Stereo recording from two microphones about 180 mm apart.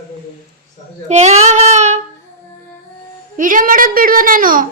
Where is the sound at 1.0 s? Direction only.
35° right (ahead or behind).